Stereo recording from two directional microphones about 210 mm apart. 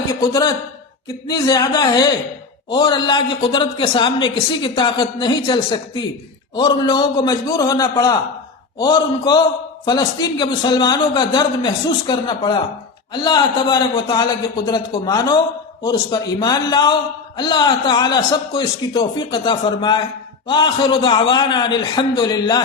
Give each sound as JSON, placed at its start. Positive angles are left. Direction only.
{"t": 0.1, "sound": "a man's voice", "side_deg": 20}